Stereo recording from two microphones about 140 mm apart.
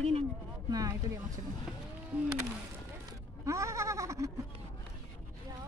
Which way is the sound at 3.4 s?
20° right (ahead or behind).